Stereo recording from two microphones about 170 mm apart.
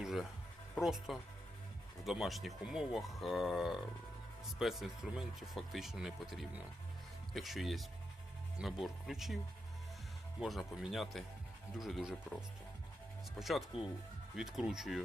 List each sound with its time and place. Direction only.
0.0 s a sound: centre (ahead or behind)
0.8 s speech: centre (ahead or behind)
10.4 s speech: centre (ahead or behind)
13.4 s speech: centre (ahead or behind)